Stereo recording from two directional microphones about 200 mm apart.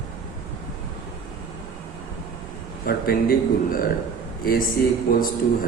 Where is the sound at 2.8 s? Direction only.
50° left (ahead or behind).